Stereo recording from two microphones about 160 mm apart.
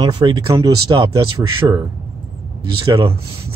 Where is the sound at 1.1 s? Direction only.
35° right (ahead or behind).